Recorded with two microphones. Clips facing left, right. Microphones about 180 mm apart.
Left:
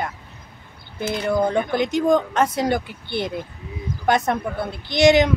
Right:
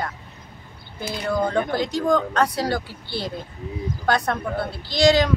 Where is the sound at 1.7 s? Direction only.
20° left (ahead or behind).